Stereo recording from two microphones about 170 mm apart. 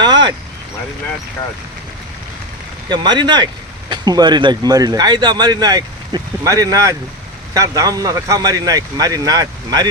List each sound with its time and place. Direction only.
0.0 s vehicle: 25° right (ahead or behind)
2.9 s speech: 25° right (ahead or behind)